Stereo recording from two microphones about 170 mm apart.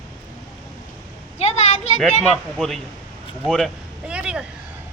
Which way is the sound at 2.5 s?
Centre (ahead or behind).